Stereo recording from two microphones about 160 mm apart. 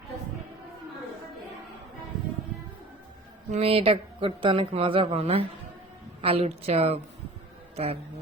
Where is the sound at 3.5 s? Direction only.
40° right (ahead or behind).